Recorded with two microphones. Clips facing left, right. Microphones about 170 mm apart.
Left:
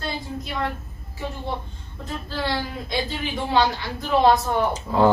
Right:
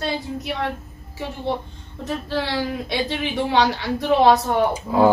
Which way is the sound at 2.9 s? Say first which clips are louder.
Right 3 dB; 80° right.